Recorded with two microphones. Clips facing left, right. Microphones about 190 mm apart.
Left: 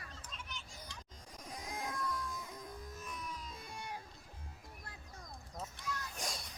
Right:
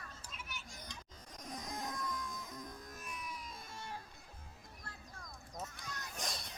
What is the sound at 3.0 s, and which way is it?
Music, 10° right (ahead or behind).